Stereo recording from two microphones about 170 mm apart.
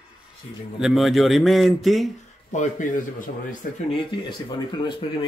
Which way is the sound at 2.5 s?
45° left (ahead or behind).